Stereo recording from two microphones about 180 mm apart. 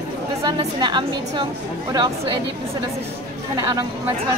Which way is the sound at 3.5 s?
20° right (ahead or behind).